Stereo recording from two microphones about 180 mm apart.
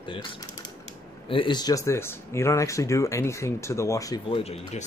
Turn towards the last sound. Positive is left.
turn(degrees=35)  # may be behind; listen again after turning